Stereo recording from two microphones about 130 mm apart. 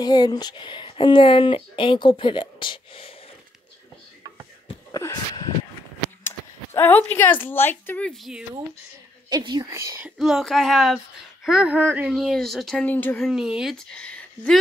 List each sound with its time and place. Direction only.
0.0 s speech: 30° left (ahead or behind)
4.9 s a sound: 30° left (ahead or behind)
6.2 s speech: 15° left (ahead or behind)
9.4 s speech: 35° right (ahead or behind)
9.7 s speech: 20° right (ahead or behind)
10.1 s speech: centre (ahead or behind)
12.1 s speech: centre (ahead or behind)
12.8 s speech: 15° left (ahead or behind)
13.2 s speech: 5° right (ahead or behind)